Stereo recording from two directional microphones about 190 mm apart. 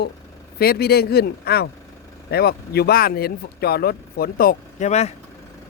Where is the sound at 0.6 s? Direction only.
55° left (ahead or behind).